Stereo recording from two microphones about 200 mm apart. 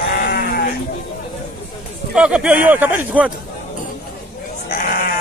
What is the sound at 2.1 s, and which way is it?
Speech, 5° right (ahead or behind).